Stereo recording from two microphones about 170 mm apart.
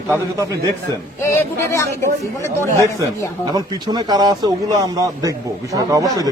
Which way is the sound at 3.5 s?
25° right (ahead or behind).